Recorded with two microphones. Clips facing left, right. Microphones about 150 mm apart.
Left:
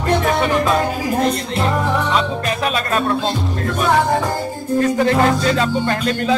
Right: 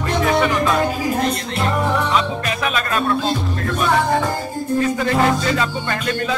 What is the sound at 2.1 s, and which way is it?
Music, 35° left (ahead or behind).